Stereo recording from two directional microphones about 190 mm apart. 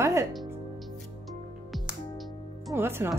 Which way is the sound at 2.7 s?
10° right (ahead or behind).